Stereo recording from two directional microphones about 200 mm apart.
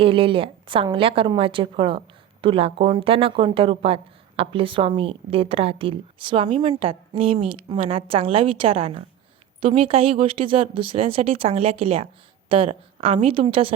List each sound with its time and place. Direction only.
0.0 s a woman's voice: 25° right (ahead or behind)